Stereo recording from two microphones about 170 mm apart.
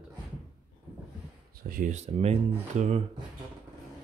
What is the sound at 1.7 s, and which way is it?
Speech, 45° right (ahead or behind).